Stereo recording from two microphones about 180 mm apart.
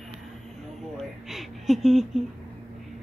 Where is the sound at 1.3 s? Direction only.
Centre (ahead or behind).